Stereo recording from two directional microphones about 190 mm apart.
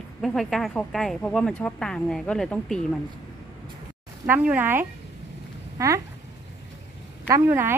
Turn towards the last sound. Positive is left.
turn(degrees=-10)  # may be behind; listen again after turning